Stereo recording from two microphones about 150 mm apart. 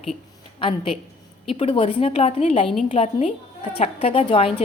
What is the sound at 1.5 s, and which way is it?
A woman's voice, 40° left (ahead or behind).